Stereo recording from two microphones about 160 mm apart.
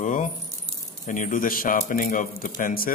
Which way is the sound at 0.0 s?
55° left (ahead or behind).